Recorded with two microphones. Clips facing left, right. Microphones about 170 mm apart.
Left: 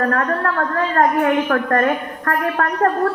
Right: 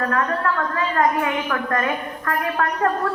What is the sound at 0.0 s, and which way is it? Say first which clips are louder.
A woman's voice: left 3 dB; 50° left (ahead or behind).